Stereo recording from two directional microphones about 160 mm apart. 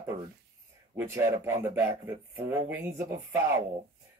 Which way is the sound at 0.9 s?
15° right (ahead or behind).